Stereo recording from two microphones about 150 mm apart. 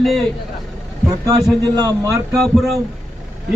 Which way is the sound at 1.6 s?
25° right (ahead or behind).